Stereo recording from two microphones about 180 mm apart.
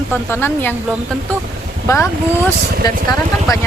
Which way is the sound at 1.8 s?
15° left (ahead or behind).